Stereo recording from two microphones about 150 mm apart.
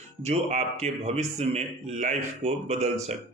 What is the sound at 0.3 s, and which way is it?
A man's voice, 50° right (ahead or behind).